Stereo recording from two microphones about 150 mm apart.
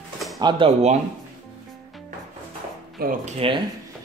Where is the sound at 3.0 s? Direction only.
90° right.